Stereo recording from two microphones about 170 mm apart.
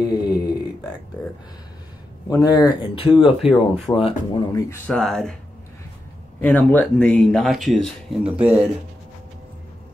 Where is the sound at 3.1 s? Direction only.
5° right (ahead or behind).